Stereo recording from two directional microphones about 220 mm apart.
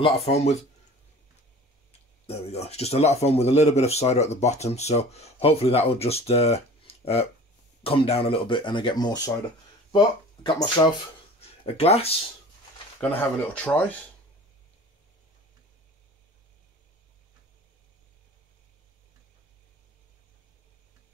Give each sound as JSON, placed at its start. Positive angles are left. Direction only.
{"t": 0.0, "sound": "speech", "side_deg": 25}
{"t": 1.9, "sound": "speech", "side_deg": 30}
{"t": 13.0, "sound": "speech", "side_deg": 5}